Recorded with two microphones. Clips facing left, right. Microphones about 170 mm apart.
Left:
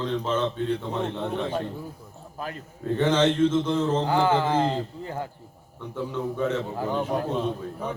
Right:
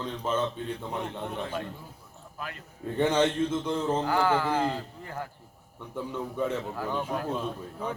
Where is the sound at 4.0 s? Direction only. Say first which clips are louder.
Left 3 dB; 25° left (ahead or behind).